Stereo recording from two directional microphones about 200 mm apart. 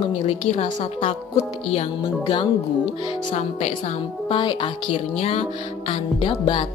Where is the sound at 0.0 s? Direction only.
25° left (ahead or behind).